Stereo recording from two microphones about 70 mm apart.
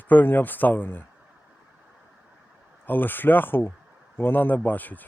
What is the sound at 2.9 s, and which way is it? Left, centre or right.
Speech, left.